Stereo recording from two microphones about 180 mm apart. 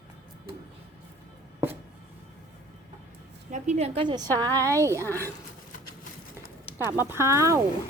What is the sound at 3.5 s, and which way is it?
Speech, 40° right (ahead or behind).